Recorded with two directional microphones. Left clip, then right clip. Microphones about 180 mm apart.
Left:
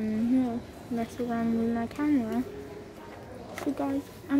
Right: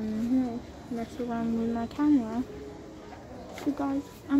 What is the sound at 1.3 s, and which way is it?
Speech, 5° left (ahead or behind).